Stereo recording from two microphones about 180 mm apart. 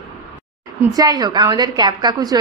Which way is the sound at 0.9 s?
20° right (ahead or behind).